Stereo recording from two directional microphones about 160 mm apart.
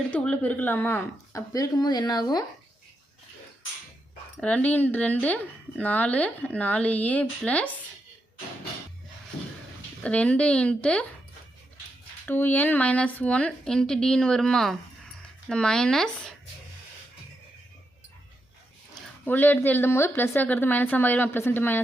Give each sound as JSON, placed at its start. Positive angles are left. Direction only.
{"t": 0.1, "sound": "speech", "side_deg": 10}
{"t": 4.4, "sound": "speech", "side_deg": 10}
{"t": 10.0, "sound": "speech", "side_deg": 10}
{"t": 12.2, "sound": "speech", "side_deg": 10}
{"t": 19.2, "sound": "speech", "side_deg": 10}